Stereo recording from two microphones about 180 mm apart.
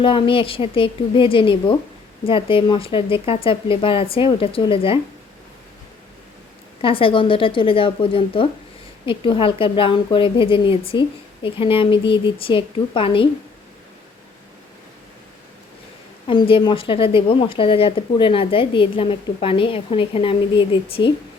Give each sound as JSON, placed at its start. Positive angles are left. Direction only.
{"t": 0.0, "sound": "speech", "side_deg": 30}
{"t": 6.8, "sound": "speech", "side_deg": 30}
{"t": 16.2, "sound": "speech", "side_deg": 30}